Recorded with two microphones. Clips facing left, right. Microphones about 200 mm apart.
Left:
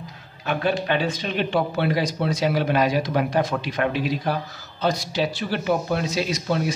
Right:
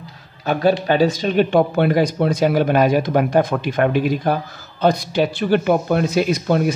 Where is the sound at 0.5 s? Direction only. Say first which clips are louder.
Right 6 dB; 40° right (ahead or behind).